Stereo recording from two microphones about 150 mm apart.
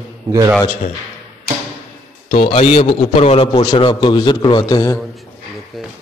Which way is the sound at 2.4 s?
40° left (ahead or behind).